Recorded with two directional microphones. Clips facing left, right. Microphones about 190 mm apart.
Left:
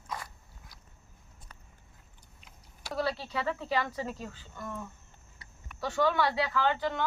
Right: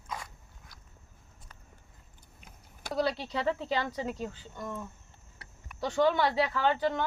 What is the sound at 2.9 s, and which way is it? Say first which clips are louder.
Speech: right 2 dB; 20° right (ahead or behind).